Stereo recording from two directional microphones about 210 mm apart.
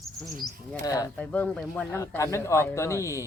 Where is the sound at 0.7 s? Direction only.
15° left (ahead or behind).